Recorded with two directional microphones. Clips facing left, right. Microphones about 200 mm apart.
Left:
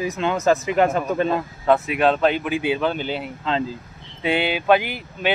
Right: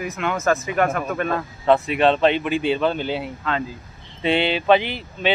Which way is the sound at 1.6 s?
5° left (ahead or behind).